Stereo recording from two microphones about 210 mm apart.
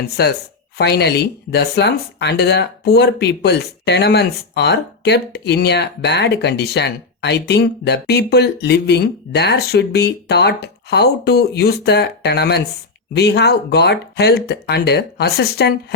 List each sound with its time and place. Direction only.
0.2 s speech: 50° left (ahead or behind)